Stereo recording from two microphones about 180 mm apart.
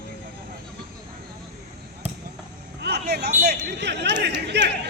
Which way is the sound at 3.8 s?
70° right (ahead or behind).